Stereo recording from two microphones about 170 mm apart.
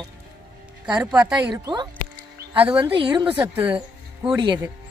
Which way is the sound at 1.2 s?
25° right (ahead or behind).